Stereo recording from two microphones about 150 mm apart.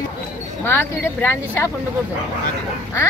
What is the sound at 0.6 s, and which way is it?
Speech, 15° left (ahead or behind).